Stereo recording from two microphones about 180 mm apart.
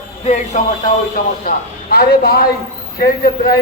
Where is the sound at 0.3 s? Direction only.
40° left (ahead or behind).